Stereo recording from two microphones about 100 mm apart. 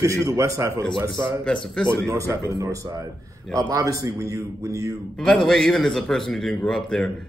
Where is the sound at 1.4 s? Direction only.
10° left (ahead or behind).